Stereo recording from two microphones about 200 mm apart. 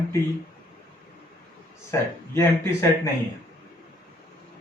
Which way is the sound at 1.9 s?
15° left (ahead or behind).